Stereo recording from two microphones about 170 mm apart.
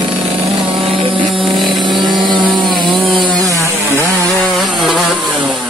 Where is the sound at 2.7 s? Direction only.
30° right (ahead or behind).